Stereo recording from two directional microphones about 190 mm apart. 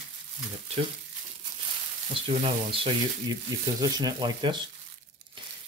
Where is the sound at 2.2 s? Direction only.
30° right (ahead or behind).